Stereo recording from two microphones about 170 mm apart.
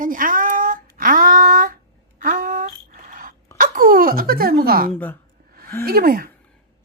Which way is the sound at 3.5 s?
50° right (ahead or behind).